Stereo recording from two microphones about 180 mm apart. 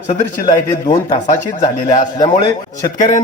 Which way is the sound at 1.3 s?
45° left (ahead or behind).